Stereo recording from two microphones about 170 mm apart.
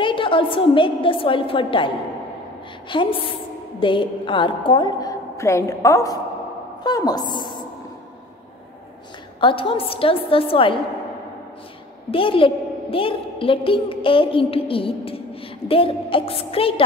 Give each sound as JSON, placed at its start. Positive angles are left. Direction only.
{"t": 0.0, "sound": "a woman's voice", "side_deg": 30}
{"t": 2.9, "sound": "a woman's voice", "side_deg": 30}
{"t": 9.4, "sound": "a woman's voice", "side_deg": 30}
{"t": 12.1, "sound": "a woman's voice", "side_deg": 30}